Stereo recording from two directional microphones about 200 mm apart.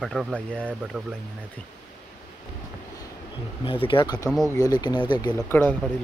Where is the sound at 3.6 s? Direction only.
25° left (ahead or behind).